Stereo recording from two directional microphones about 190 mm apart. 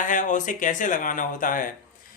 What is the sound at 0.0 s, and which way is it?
Speech, 40° left (ahead or behind).